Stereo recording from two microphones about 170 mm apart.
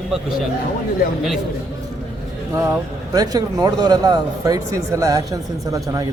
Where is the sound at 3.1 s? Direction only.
20° right (ahead or behind).